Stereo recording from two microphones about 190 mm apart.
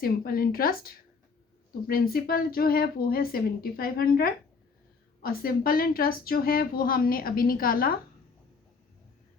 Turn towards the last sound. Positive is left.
turn(degrees=50)  # may be behind; listen again after turning